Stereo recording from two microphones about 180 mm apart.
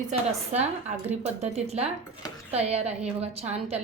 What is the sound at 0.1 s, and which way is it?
A woman's voice, 40° right (ahead or behind).